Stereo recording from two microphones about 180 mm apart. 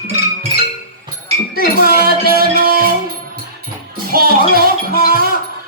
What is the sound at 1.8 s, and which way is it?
Music, 55° right (ahead or behind).